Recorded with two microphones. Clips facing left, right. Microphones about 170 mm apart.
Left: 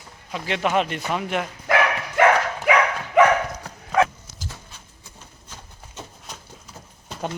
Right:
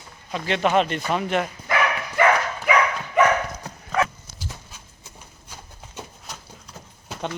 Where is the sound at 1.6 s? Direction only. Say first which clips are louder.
Left 2 dB; 70° left (ahead or behind).